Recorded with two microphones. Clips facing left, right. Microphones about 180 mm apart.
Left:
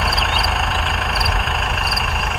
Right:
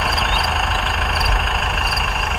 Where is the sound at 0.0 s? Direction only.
Centre (ahead or behind).